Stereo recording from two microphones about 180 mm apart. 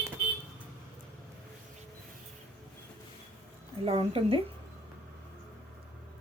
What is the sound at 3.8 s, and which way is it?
Speech, 30° right (ahead or behind).